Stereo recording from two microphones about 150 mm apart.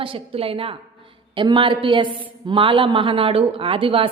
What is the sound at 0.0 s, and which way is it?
A woman's voice, 40° right (ahead or behind).